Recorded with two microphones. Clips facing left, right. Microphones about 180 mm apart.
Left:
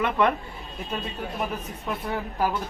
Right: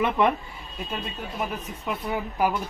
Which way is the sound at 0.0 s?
20° right (ahead or behind).